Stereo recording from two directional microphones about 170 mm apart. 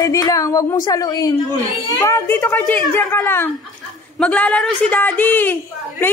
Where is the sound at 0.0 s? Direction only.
20° left (ahead or behind).